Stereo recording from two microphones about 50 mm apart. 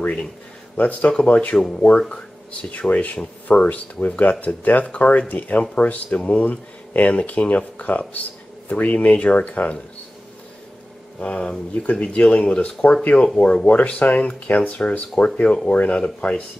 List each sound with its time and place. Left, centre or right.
0.7 s speech: left
11.1 s speech: left